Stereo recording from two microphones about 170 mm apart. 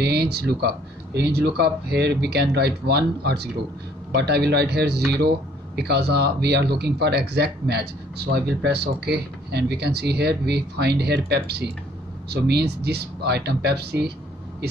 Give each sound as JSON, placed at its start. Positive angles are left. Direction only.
{"t": 0.0, "sound": "speech", "side_deg": -70}